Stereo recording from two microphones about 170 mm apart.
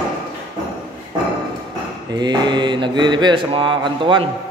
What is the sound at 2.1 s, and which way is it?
Mantra, 25° right (ahead or behind).